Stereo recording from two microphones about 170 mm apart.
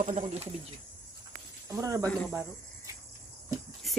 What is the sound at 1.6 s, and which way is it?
Speech, 20° right (ahead or behind).